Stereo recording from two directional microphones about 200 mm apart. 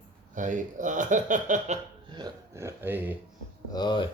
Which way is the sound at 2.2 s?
15° right (ahead or behind).